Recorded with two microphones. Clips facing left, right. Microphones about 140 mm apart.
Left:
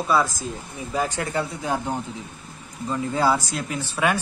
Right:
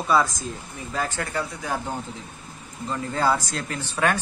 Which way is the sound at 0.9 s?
20° left (ahead or behind).